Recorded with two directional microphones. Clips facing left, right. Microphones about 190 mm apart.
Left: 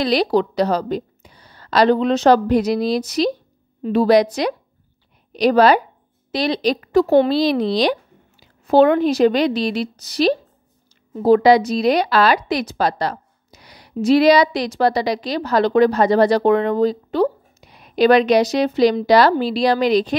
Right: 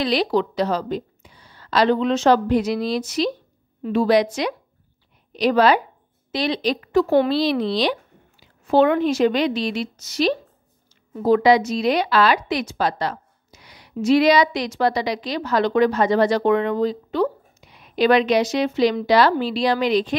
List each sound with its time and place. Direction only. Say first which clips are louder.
0.0 s a woman's voice: left 3 dB; 40° left (ahead or behind)